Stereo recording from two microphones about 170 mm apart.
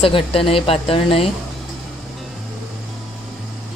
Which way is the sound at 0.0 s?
30° left (ahead or behind).